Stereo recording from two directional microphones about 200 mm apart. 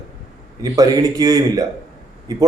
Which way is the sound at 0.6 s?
15° right (ahead or behind).